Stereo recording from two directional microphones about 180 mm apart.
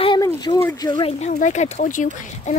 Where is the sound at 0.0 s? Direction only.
25° left (ahead or behind).